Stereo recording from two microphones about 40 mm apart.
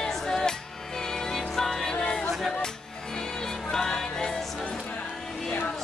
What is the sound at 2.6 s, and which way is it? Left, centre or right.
Music, centre.